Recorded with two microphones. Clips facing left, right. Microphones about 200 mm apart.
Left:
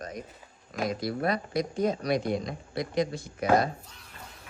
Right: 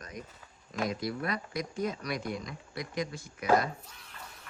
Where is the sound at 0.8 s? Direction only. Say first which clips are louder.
Left 4 dB; 35° left (ahead or behind).